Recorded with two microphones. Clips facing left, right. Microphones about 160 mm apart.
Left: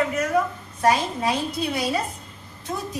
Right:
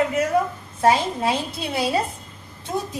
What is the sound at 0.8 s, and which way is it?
A woman's voice, 25° right (ahead or behind).